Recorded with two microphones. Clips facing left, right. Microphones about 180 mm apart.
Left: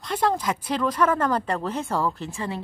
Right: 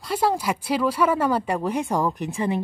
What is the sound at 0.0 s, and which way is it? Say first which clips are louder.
A woman's voice: right 1 dB; 10° right (ahead or behind).